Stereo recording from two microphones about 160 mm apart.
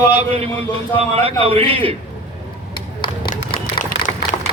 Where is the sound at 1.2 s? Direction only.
35° right (ahead or behind).